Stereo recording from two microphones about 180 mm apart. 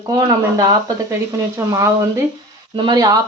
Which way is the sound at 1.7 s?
15° right (ahead or behind).